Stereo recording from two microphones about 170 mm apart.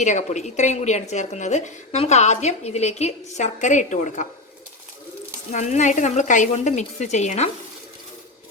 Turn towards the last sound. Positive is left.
turn(degrees=40)  # may be behind; listen again after turning